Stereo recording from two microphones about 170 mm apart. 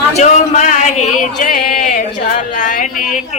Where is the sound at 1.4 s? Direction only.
55° left (ahead or behind).